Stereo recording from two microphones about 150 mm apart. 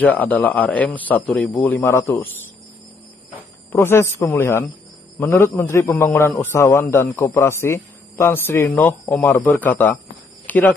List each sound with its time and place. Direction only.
0.0 s a man's voice: 10° left (ahead or behind)
3.7 s a man's voice: 15° left (ahead or behind)
10.4 s a sound: 10° left (ahead or behind)